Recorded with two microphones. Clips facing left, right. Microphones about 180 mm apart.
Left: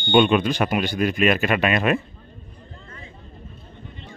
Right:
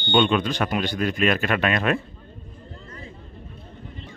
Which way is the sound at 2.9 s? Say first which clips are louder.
Right 3 dB; 40° right (ahead or behind).